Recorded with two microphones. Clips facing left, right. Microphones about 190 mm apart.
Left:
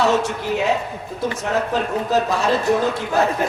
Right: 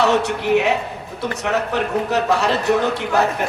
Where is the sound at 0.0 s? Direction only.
65° right (ahead or behind).